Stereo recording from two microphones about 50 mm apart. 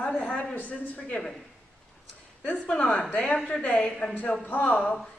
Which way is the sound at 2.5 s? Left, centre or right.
Left.